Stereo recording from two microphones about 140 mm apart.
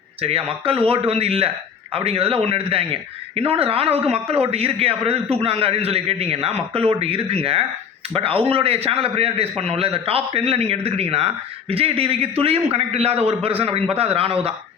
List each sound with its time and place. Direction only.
0.2 s a man's voice: 45° right (ahead or behind)